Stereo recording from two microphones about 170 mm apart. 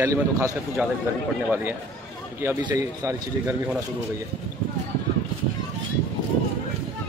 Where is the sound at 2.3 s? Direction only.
15° right (ahead or behind).